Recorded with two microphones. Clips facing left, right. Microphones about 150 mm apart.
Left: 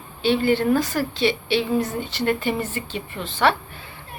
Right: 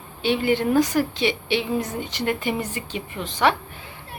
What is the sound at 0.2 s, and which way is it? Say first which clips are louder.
A woman's voice: left 2 dB; 15° right (ahead or behind).